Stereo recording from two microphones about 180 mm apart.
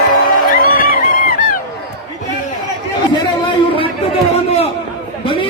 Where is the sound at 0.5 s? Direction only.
55° left (ahead or behind).